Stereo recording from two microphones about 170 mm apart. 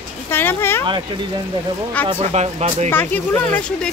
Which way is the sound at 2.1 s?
35° right (ahead or behind).